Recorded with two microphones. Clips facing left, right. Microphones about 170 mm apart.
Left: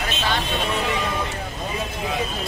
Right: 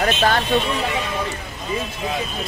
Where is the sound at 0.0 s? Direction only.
55° right (ahead or behind).